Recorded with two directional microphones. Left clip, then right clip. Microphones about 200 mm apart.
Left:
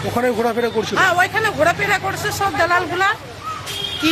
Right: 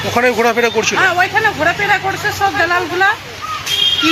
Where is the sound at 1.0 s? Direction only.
30° left (ahead or behind).